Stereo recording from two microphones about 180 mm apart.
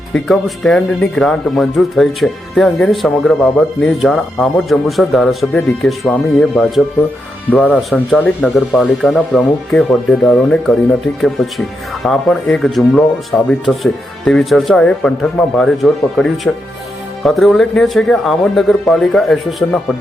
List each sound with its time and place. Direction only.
0.1 s speech: centre (ahead or behind)